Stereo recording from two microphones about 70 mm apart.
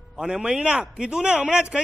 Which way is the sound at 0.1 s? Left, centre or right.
Centre.